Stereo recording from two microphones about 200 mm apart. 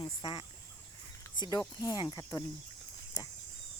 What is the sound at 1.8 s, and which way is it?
Cricket, 20° left (ahead or behind).